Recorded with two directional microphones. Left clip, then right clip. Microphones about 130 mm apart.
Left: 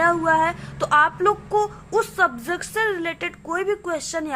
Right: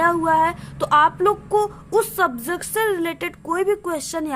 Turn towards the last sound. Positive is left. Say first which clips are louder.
# right 1 dB
turn(degrees=-45)  # may be behind; listen again after turning